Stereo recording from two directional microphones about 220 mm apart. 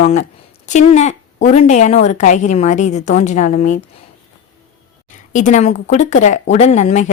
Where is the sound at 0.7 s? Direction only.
30° left (ahead or behind).